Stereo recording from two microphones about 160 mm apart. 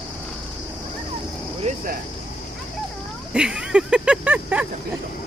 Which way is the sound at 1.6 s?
45° right (ahead or behind).